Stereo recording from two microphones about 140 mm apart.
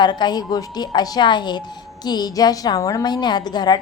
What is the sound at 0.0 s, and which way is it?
A woman's voice, 30° left (ahead or behind).